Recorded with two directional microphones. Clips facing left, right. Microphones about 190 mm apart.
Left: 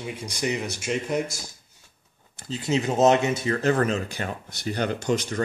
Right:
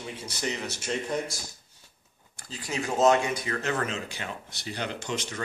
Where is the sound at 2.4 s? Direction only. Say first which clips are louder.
Left 8 dB; 25° left (ahead or behind).